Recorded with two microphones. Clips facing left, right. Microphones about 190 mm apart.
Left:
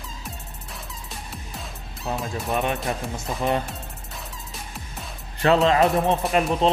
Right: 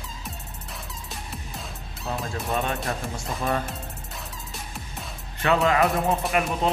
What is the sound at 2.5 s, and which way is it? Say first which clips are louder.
Speech: left 3 dB; 15° left (ahead or behind).